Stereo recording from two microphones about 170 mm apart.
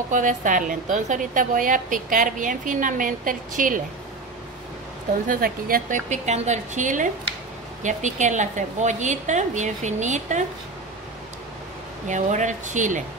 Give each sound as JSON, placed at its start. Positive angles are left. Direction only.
{"t": 0.1, "sound": "a woman's voice", "side_deg": -50}
{"t": 5.3, "sound": "a woman's voice", "side_deg": -55}
{"t": 12.1, "sound": "a woman's voice", "side_deg": -45}